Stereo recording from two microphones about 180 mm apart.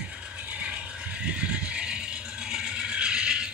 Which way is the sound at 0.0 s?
5° right (ahead or behind).